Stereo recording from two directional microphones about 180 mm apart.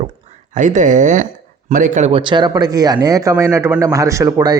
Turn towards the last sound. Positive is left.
turn(degrees=-20)  # may be behind; listen again after turning